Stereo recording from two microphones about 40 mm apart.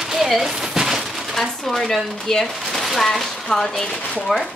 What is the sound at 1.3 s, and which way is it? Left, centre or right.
Speech, centre.